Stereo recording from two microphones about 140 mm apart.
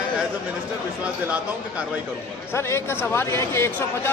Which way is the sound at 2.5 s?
15° left (ahead or behind).